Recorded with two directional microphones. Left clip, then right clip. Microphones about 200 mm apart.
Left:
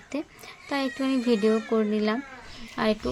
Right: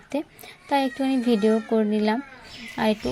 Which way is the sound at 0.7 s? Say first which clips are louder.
Right 4 dB; 5° right (ahead or behind).